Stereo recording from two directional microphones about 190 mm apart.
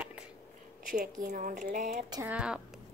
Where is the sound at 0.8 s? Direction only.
45° right (ahead or behind).